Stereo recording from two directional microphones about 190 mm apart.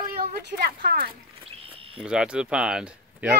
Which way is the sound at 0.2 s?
50° right (ahead or behind).